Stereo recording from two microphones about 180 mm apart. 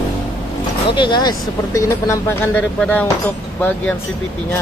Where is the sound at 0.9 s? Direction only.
25° left (ahead or behind); by 3.9 s 10° left (ahead or behind).